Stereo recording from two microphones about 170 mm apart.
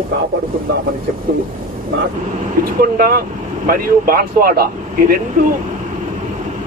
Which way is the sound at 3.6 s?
60° right (ahead or behind).